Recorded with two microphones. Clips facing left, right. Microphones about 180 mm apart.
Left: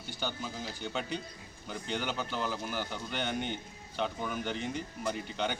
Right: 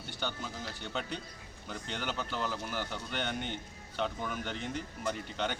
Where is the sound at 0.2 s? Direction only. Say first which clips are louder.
Left 1 dB; 5° left (ahead or behind).